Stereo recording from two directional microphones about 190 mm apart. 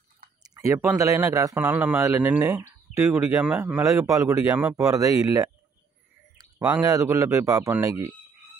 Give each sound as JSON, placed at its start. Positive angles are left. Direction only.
{"t": 0.4, "sound": "speech", "side_deg": -15}